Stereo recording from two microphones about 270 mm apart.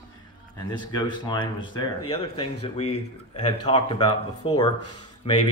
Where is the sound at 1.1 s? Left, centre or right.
Centre.